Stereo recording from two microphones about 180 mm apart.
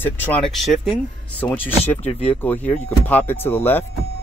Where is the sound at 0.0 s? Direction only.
10° left (ahead or behind).